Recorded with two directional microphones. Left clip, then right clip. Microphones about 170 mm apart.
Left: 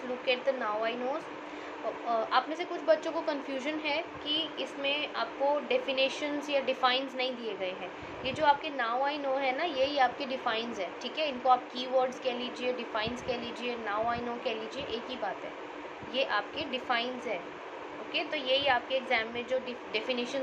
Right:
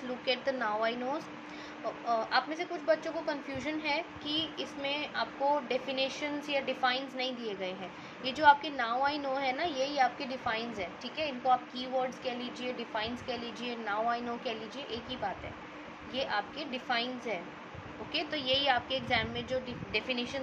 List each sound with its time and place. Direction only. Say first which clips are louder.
0.3 s speech: left 2 dB; 30° right (ahead or behind)
2.0 s a woman's voice: left 1 dB; 20° right (ahead or behind)
16.2 s a woman's voice: left 3 dB; 15° right (ahead or behind)
19.9 s a woman's voice: left 1 dB; 15° right (ahead or behind)